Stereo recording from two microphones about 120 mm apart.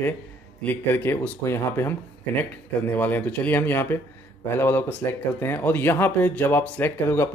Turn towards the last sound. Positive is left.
turn(degrees=20)  # may be behind; listen again after turning